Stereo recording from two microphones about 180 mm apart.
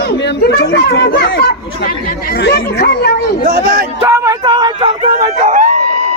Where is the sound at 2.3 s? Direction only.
65° left (ahead or behind).